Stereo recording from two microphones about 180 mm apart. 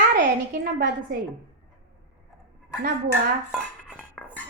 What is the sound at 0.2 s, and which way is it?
Speech, 50° right (ahead or behind).